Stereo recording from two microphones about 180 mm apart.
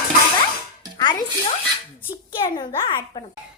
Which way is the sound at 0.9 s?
25° left (ahead or behind).